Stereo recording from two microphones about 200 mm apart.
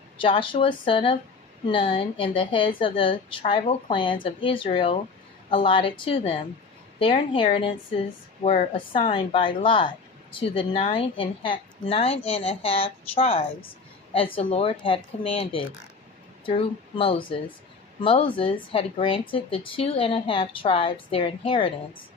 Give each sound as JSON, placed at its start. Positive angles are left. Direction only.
{"t": 0.2, "sound": "a woman's voice", "side_deg": 25}